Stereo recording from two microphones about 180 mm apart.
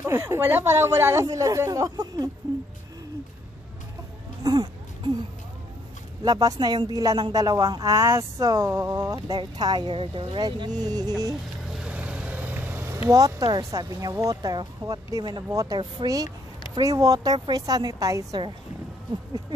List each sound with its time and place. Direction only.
0.0 s speech: 15° right (ahead or behind)
4.4 s a sound: 20° right (ahead or behind)
6.2 s a man's voice: 25° right (ahead or behind)
11.7 s a man's voice: 5° right (ahead or behind); by 18.5 s 20° right (ahead or behind)